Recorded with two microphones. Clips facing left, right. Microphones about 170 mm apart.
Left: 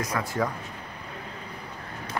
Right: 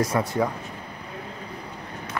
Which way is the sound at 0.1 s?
25° right (ahead or behind).